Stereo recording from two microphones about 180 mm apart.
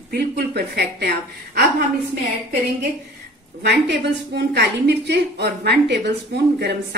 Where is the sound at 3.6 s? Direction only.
70° right (ahead or behind).